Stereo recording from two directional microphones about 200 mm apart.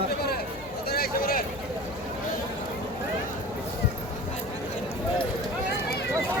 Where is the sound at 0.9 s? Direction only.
50° left (ahead or behind).